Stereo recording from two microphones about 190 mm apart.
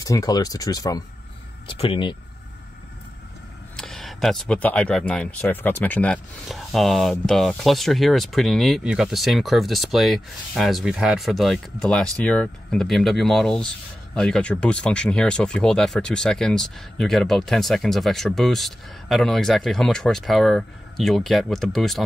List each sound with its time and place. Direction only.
0.0 s speech: 20° left (ahead or behind)
3.7 s speech: centre (ahead or behind)